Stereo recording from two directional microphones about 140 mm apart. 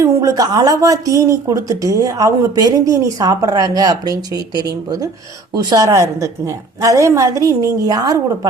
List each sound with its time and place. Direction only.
0.0 s a woman's voice: 25° right (ahead or behind)